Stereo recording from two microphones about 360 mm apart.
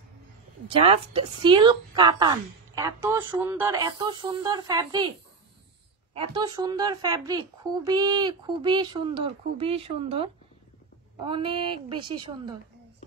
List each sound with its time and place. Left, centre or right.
0.7 s a woman's voice: centre
6.1 s a woman's voice: centre